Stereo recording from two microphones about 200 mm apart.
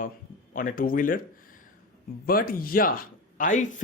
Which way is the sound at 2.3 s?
45° left (ahead or behind).